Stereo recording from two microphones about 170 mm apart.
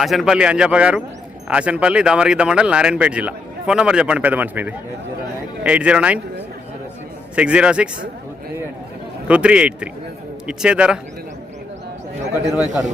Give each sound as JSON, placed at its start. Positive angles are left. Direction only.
{"t": 0.0, "sound": "speech", "side_deg": 0}
{"t": 7.3, "sound": "speech", "side_deg": -5}
{"t": 9.2, "sound": "speech", "side_deg": -5}
{"t": 12.5, "sound": "a man's voice", "side_deg": 20}